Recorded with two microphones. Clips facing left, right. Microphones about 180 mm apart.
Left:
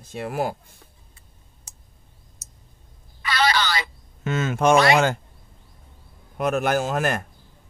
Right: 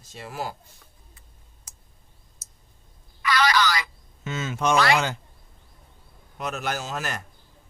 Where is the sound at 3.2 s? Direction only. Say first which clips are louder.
Even; 30° left (ahead or behind).